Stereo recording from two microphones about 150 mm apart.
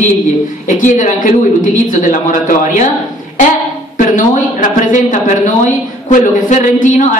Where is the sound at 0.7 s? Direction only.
60° left (ahead or behind).